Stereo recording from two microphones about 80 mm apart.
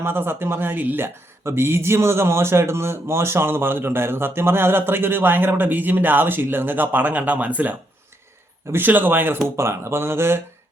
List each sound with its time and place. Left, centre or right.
0.0 s speech: right